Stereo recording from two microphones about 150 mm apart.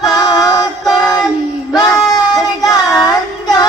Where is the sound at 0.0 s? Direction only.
25° left (ahead or behind).